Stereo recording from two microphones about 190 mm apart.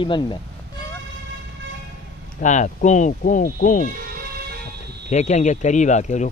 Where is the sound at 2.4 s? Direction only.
40° left (ahead or behind).